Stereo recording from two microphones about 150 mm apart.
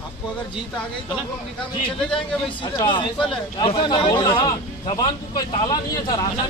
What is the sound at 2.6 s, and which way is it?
Speech, 30° left (ahead or behind).